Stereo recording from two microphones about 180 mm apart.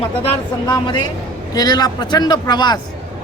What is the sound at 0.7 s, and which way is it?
Speech, 25° left (ahead or behind).